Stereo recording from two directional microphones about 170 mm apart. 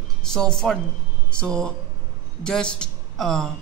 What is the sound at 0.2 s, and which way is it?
A man's voice, 5° left (ahead or behind).